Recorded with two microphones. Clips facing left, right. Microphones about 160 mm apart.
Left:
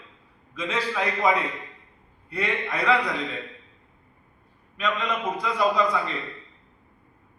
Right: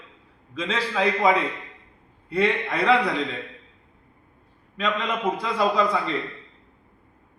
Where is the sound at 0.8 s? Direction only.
30° right (ahead or behind).